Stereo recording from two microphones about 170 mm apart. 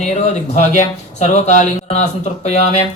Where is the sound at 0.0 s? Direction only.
45° left (ahead or behind).